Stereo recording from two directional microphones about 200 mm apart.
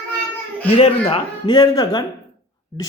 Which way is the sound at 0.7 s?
30° left (ahead or behind).